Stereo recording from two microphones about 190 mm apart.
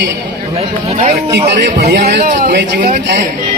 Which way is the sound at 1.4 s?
60° right (ahead or behind).